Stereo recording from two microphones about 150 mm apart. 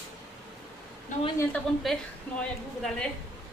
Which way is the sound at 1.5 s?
Centre (ahead or behind).